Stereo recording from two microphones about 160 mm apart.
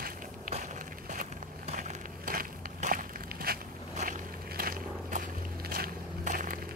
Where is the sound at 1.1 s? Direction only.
55° right (ahead or behind).